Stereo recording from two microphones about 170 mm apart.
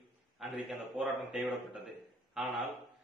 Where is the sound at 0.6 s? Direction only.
5° right (ahead or behind).